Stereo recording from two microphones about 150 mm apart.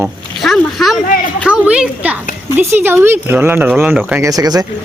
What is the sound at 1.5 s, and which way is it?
Speech, 5° right (ahead or behind).